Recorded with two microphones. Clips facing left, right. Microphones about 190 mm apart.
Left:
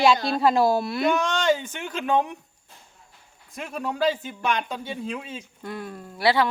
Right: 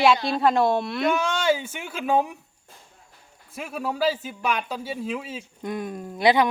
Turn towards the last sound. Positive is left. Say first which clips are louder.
# right 2 dB
turn(degrees=-20)  # may be behind; listen again after turning